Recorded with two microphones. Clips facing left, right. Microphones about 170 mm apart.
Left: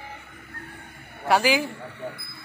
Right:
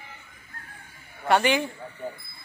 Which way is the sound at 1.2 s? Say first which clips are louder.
Left 1 dB; 5° left (ahead or behind).